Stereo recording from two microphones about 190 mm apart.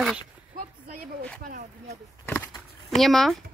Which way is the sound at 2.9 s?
Centre (ahead or behind).